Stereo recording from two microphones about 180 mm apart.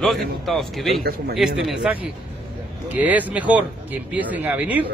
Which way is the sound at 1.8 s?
5° right (ahead or behind).